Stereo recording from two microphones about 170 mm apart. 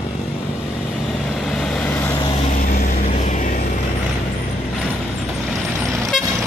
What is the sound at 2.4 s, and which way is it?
Vehicle, 55° left (ahead or behind).